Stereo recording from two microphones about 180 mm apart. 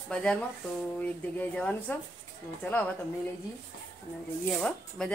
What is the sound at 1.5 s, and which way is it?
Speech, 5° left (ahead or behind).